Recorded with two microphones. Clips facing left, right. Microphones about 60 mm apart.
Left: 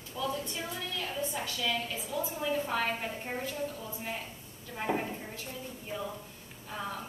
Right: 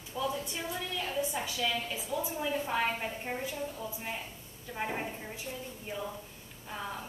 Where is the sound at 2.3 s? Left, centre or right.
Centre.